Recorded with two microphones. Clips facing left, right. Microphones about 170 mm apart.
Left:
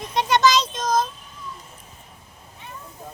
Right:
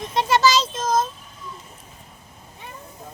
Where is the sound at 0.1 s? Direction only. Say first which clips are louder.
Even; 5° right (ahead or behind).